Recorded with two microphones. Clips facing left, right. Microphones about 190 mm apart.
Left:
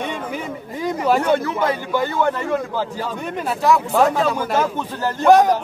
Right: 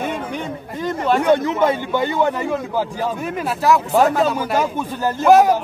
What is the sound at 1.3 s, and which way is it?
Speech, 20° right (ahead or behind).